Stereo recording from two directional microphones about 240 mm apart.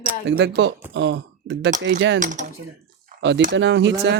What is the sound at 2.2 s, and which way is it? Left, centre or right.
Speech, right.